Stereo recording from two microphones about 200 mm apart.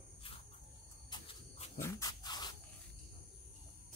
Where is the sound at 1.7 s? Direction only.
15° left (ahead or behind).